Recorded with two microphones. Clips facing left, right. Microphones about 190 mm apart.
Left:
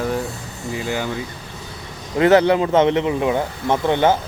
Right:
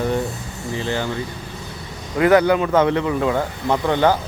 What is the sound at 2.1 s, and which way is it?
Speech, 25° left (ahead or behind).